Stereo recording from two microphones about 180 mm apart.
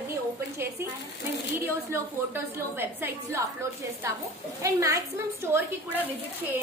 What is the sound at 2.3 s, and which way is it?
A woman's voice, 10° right (ahead or behind).